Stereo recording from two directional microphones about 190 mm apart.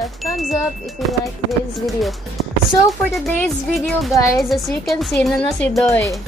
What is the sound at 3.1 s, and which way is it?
Speech, centre (ahead or behind).